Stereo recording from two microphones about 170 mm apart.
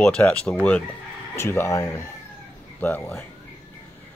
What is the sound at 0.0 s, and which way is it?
Speech, 5° left (ahead or behind).